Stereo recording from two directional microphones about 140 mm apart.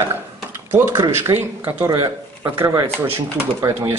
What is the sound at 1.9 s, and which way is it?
Speech, 30° right (ahead or behind).